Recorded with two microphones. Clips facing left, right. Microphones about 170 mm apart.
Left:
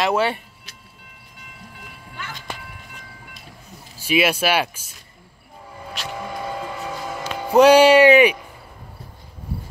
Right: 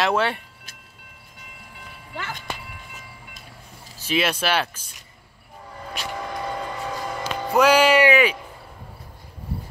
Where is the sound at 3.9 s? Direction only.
10° left (ahead or behind).